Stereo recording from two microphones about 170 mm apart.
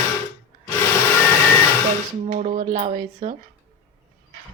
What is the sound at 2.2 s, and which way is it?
A woman's voice, 40° right (ahead or behind).